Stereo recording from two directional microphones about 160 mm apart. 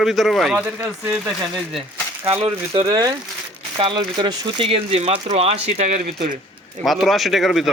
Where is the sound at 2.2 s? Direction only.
35° right (ahead or behind).